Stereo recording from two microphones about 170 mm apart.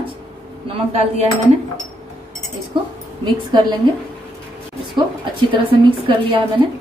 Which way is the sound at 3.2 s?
25° right (ahead or behind).